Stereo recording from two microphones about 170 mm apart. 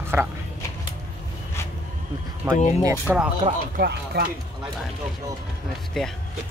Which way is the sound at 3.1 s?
5° right (ahead or behind).